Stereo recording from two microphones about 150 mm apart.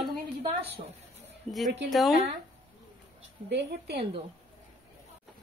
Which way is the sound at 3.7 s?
90° right.